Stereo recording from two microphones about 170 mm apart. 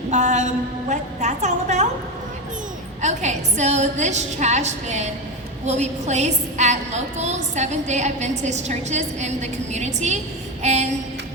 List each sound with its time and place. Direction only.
0.1 s a woman's voice: 45° right (ahead or behind)
3.0 s a woman's voice: 45° right (ahead or behind)
10.6 s a sound: 40° right (ahead or behind)